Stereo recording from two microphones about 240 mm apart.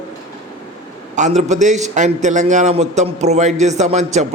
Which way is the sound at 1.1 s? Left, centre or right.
Right.